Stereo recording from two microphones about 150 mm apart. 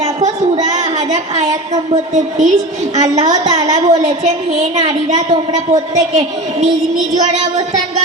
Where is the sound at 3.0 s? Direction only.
25° right (ahead or behind).